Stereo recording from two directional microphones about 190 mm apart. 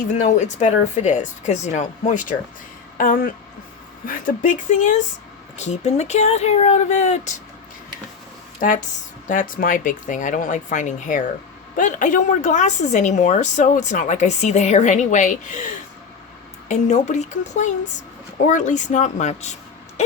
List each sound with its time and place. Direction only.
0.0 s a woman's voice: 40° left (ahead or behind)
8.6 s a woman's voice: 45° left (ahead or behind)